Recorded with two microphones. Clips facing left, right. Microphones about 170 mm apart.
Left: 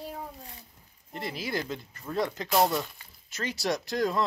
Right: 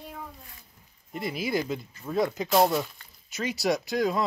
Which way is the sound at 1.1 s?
10° right (ahead or behind).